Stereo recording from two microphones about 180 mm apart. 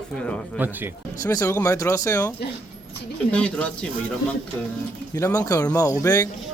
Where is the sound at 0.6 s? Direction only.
10° right (ahead or behind).